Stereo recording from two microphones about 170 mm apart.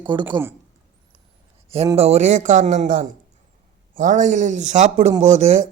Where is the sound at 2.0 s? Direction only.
40° right (ahead or behind).